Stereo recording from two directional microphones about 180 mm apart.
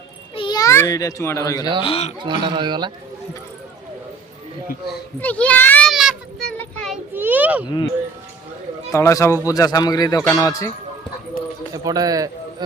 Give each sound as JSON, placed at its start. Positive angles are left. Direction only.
{"t": 0.3, "sound": "a child's voice", "side_deg": 25}
{"t": 1.8, "sound": "speech", "side_deg": 35}
{"t": 2.1, "sound": "speech", "side_deg": -25}
{"t": 5.2, "sound": "a child's voice", "side_deg": 10}
{"t": 5.9, "sound": "a sound", "side_deg": 0}
{"t": 6.6, "sound": "child singing", "side_deg": 5}
{"t": 7.1, "sound": "a sound", "side_deg": -10}
{"t": 8.9, "sound": "a child's voice", "side_deg": 15}
{"t": 11.7, "sound": "a man's voice", "side_deg": -20}